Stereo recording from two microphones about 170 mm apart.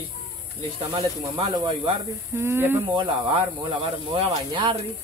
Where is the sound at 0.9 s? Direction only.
25° right (ahead or behind).